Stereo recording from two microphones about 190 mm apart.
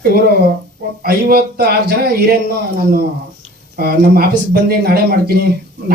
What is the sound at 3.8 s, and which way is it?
A man's voice, 55° right (ahead or behind).